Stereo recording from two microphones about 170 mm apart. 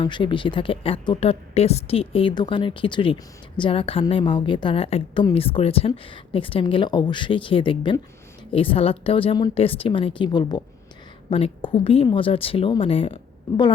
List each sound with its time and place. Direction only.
0.0 s a woman's voice: 30° left (ahead or behind)